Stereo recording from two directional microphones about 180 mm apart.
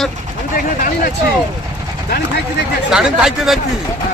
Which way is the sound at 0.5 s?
50° left (ahead or behind).